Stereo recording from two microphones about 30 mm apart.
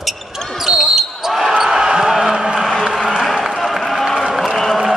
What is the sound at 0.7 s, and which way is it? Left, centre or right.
Basketball bounce, centre.